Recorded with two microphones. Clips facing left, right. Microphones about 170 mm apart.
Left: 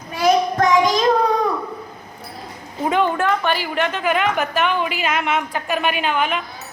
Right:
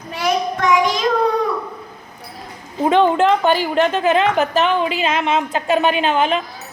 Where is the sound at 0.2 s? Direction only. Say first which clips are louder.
Left 3 dB; 40° left (ahead or behind).